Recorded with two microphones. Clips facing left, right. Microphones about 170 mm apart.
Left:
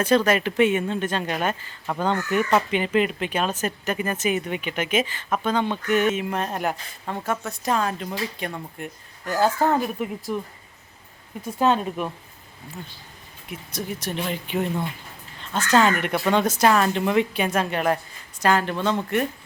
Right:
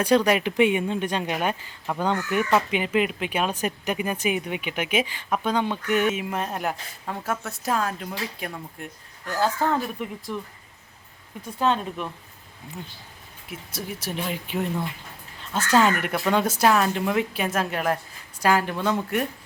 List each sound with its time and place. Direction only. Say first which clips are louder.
0.0 s speech: even; 15° right (ahead or behind); by 10.4 s 10° left (ahead or behind)
11.6 s speech: left 3 dB; 5° left (ahead or behind)
13.5 s a woman's voice: left 3 dB; 5° right (ahead or behind)